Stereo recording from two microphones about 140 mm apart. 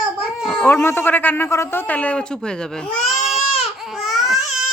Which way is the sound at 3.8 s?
Centre (ahead or behind).